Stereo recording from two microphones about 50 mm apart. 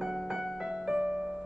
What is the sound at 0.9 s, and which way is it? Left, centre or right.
Piano, centre.